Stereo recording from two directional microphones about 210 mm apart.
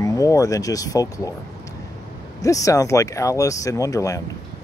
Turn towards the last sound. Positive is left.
turn(degrees=15)  # may be behind; listen again after turning